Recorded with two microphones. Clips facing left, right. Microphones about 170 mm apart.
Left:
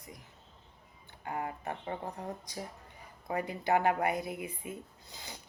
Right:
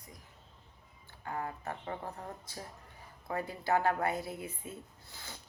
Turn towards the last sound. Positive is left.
turn(degrees=15)  # may be behind; listen again after turning